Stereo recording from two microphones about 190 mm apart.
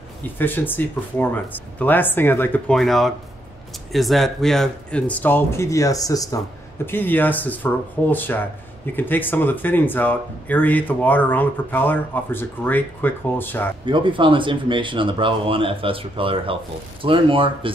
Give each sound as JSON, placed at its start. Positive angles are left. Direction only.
{"t": 0.4, "sound": "speech", "side_deg": 10}
{"t": 13.8, "sound": "speech", "side_deg": -25}